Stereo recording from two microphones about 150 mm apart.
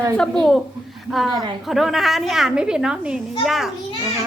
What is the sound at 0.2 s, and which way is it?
Speech, 5° left (ahead or behind).